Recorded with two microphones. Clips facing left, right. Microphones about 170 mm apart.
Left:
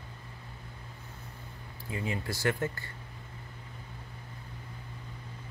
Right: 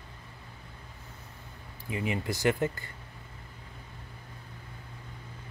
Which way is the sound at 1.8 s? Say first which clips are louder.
Right 3 dB; 15° right (ahead or behind).